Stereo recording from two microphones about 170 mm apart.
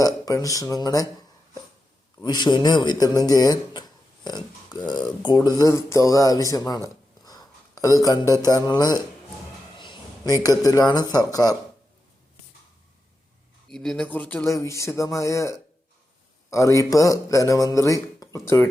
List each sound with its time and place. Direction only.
0.0 s speech: 20° left (ahead or behind)
2.2 s speech: 25° left (ahead or behind)
7.3 s a sound: 20° left (ahead or behind)
8.3 s speech: 20° left (ahead or behind)
9.7 s a sound: 30° left (ahead or behind)
10.6 s speech: 20° left (ahead or behind)
13.7 s speech: centre (ahead or behind)